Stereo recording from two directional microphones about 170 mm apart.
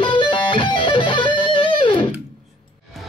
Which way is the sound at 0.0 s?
30° left (ahead or behind).